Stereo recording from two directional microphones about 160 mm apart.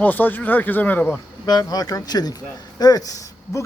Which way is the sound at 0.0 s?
10° left (ahead or behind).